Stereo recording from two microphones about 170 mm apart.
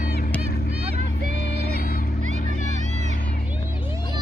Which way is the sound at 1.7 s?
55° left (ahead or behind).